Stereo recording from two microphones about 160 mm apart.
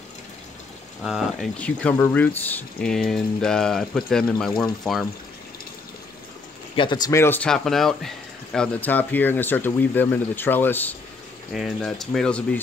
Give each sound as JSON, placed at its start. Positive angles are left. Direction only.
{"t": 1.0, "sound": "speech", "side_deg": 0}
{"t": 6.7, "sound": "speech", "side_deg": 30}
{"t": 7.1, "sound": "speech", "side_deg": 15}
{"t": 11.5, "sound": "speech", "side_deg": 0}